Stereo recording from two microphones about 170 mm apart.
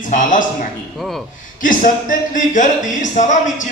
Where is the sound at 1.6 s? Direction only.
50° left (ahead or behind).